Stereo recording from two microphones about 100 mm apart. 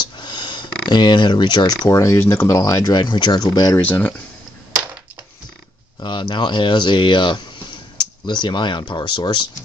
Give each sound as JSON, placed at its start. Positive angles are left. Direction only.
{"t": 0.0, "sound": "a sound", "side_deg": 45}
{"t": 1.9, "sound": "speech", "side_deg": 30}
{"t": 3.7, "sound": "speech", "side_deg": 25}
{"t": 5.9, "sound": "speech", "side_deg": 50}